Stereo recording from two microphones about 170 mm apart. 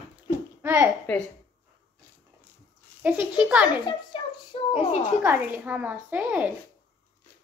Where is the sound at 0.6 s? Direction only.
15° right (ahead or behind).